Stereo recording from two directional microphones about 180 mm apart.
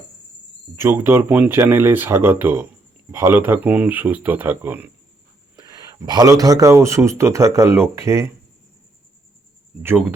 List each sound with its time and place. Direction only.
0.8 s speech: 15° right (ahead or behind)
5.5 s speech: 20° right (ahead or behind)
9.8 s speech: 10° right (ahead or behind)